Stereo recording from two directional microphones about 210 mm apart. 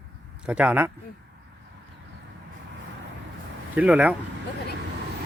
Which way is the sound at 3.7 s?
5° right (ahead or behind).